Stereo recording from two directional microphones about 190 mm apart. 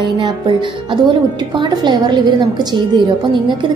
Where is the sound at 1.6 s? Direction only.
20° right (ahead or behind).